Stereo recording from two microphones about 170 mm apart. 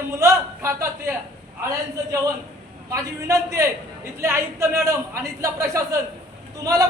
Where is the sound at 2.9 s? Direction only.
20° right (ahead or behind).